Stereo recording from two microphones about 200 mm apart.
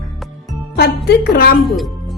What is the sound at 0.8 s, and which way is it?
Speech, 55° left (ahead or behind).